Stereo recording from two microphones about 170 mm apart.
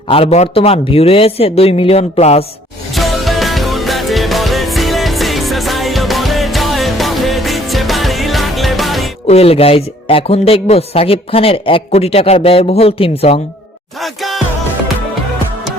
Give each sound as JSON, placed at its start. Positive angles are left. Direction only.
{"t": 0.1, "sound": "speech", "side_deg": 35}
{"t": 2.9, "sound": "music", "side_deg": 0}
{"t": 9.2, "sound": "speech", "side_deg": 35}
{"t": 14.0, "sound": "music", "side_deg": 0}